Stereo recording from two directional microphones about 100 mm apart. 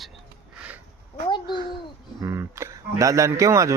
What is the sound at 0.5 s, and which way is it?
Speech, 15° right (ahead or behind).